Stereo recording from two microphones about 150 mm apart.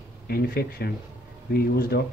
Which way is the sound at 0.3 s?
90° left.